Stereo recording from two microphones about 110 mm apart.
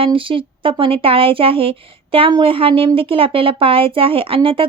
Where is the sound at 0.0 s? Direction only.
55° right (ahead or behind).